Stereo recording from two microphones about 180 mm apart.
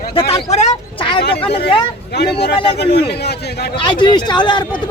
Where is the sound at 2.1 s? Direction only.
70° left (ahead or behind).